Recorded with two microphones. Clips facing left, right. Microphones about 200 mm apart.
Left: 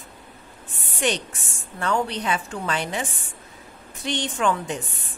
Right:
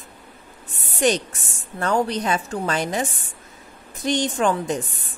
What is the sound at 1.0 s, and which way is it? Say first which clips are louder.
Speech: right 5 dB; 40° right (ahead or behind).